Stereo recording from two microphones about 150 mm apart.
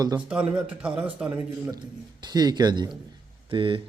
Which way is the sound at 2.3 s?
25° right (ahead or behind).